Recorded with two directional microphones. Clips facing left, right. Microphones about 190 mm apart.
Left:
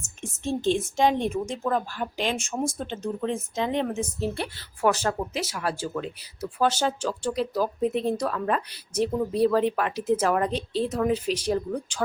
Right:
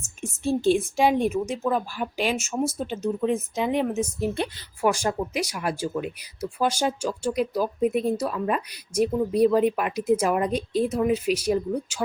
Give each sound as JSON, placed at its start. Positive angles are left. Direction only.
{"t": 0.2, "sound": "speech", "side_deg": -10}